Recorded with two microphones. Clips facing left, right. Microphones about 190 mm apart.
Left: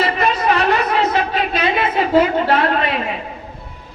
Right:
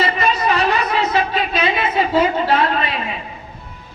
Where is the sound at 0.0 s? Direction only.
55° left (ahead or behind).